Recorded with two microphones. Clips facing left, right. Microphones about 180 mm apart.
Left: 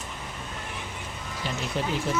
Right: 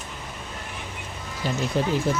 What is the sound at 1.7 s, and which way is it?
Speech, 40° right (ahead or behind).